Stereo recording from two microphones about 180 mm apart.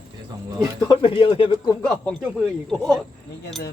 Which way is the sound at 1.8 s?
5° left (ahead or behind).